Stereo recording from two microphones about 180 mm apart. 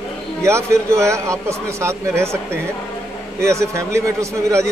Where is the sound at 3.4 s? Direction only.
15° right (ahead or behind).